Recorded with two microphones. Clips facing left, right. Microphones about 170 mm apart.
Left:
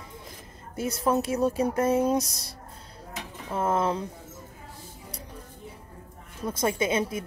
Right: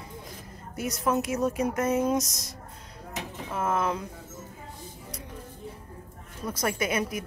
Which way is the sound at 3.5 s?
30° left (ahead or behind).